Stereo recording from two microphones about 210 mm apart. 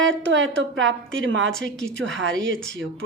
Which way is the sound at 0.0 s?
60° right (ahead or behind).